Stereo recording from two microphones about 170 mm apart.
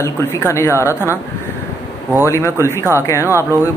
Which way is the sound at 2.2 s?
15° left (ahead or behind).